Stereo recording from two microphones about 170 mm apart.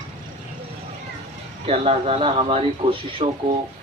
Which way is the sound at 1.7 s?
40° right (ahead or behind).